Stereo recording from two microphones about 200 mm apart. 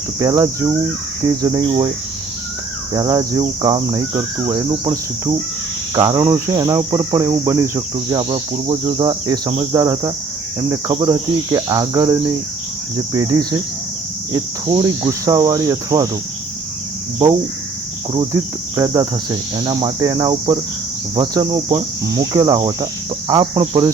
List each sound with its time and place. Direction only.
0.2 s cricket: 20° right (ahead or behind)
2.9 s cricket: 20° right (ahead or behind)
8.2 s cricket: 30° right (ahead or behind)
14.3 s cricket: 20° right (ahead or behind)
18.1 s cricket: 20° right (ahead or behind)